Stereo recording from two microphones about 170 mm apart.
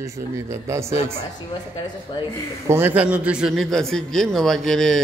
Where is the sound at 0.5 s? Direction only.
15° right (ahead or behind).